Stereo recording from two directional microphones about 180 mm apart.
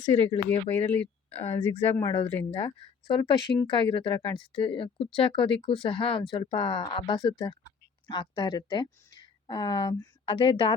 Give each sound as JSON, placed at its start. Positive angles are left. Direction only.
{"t": 0.0, "sound": "speech", "side_deg": 30}
{"t": 0.5, "sound": "speech", "side_deg": 10}
{"t": 1.4, "sound": "speech", "side_deg": 35}
{"t": 2.0, "sound": "speech", "side_deg": 20}